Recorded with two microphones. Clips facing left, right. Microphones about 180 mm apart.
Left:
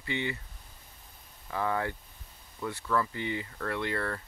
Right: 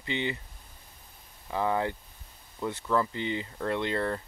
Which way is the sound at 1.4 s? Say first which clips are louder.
Right 3 dB; 20° right (ahead or behind).